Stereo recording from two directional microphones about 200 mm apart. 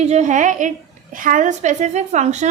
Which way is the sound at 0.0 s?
35° right (ahead or behind).